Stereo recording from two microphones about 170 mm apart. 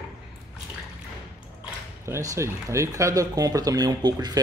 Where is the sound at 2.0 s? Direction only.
15° right (ahead or behind).